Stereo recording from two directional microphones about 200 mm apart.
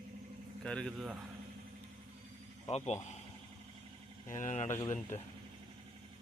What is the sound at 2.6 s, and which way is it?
Speech, 30° left (ahead or behind).